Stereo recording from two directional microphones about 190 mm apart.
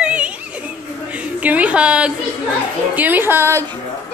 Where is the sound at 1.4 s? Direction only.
5° right (ahead or behind).